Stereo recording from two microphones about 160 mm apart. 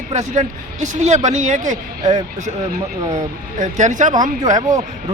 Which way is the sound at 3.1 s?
50° right (ahead or behind).